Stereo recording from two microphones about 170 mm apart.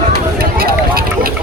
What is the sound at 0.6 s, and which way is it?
Run, 60° right (ahead or behind).